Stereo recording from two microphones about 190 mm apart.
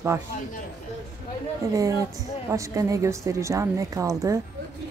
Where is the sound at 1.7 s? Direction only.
15° right (ahead or behind).